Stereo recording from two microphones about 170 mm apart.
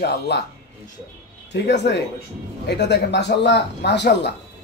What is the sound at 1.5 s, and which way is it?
A man's voice, 90° left.